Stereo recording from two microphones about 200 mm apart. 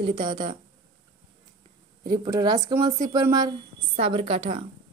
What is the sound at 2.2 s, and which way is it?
A woman's voice, 20° right (ahead or behind).